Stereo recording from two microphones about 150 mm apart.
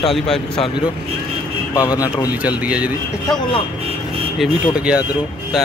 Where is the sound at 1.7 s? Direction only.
25° left (ahead or behind).